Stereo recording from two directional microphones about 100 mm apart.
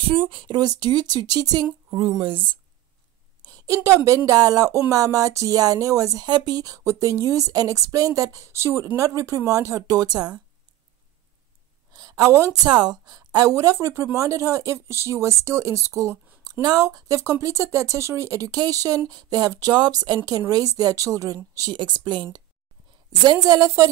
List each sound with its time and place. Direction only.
0.0 s speech: 60° right (ahead or behind); by 1.7 s 40° right (ahead or behind)
1.9 s speech: 60° right (ahead or behind)
3.4 s a woman's voice: 35° right (ahead or behind)
6.2 s speech: 45° right (ahead or behind)
11.9 s a sound: 40° right (ahead or behind)
12.6 s speech: 45° right (ahead or behind)
21.7 s speech: 50° right (ahead or behind)
23.2 s speech: 40° right (ahead or behind)